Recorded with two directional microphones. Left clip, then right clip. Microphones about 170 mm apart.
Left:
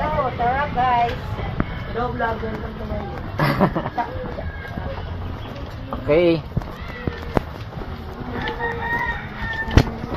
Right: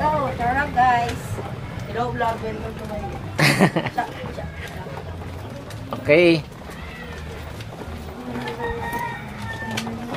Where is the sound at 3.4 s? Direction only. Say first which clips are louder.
Right 2 dB; 15° right (ahead or behind).